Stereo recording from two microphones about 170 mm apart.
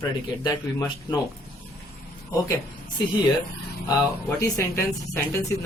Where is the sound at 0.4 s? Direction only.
25° left (ahead or behind).